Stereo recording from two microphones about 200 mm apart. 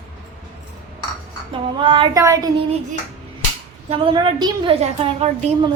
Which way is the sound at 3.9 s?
25° right (ahead or behind).